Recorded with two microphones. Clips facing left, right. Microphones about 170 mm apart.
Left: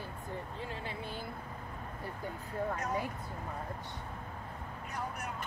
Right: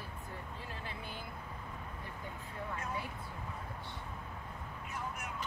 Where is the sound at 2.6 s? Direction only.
40° left (ahead or behind).